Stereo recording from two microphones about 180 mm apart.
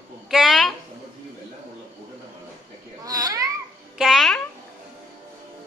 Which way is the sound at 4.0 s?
Centre (ahead or behind).